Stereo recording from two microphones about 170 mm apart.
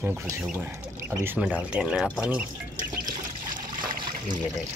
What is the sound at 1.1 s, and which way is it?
Speech, 10° right (ahead or behind).